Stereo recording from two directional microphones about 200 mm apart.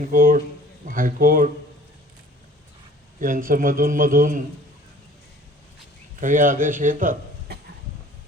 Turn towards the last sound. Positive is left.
turn(degrees=-40)  # may be behind; listen again after turning